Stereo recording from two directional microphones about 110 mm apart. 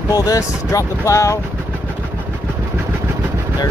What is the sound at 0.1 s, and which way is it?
Speech, 35° left (ahead or behind).